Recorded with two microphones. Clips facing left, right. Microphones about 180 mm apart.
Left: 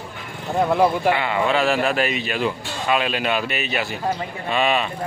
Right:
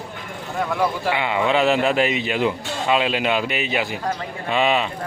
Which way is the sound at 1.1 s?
15° right (ahead or behind).